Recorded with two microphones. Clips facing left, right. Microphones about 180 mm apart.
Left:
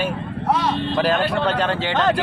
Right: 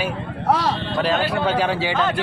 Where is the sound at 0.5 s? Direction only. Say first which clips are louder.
Right 1 dB; 35° right (ahead or behind).